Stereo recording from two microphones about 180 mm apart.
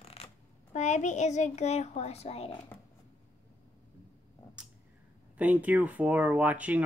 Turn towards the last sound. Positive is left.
turn(degrees=-10)  # may be behind; listen again after turning